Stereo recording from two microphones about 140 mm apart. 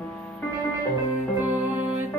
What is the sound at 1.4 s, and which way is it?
Music, 10° right (ahead or behind).